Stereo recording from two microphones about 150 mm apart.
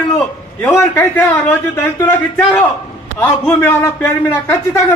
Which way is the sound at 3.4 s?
20° left (ahead or behind).